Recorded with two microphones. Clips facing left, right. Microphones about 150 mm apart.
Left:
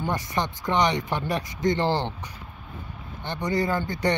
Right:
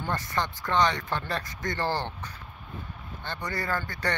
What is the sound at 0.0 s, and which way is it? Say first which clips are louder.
Speech: left 3 dB; 15° left (ahead or behind).